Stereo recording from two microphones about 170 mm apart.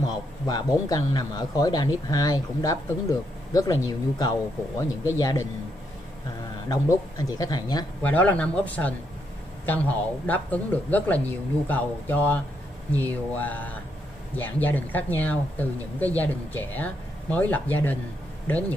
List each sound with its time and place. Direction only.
0.0 s a man's voice: 25° left (ahead or behind)
6.7 s a man's voice: 20° left (ahead or behind)
8.0 s a man's voice: 10° left (ahead or behind)